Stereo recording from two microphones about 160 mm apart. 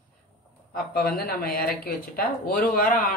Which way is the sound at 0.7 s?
70° left (ahead or behind).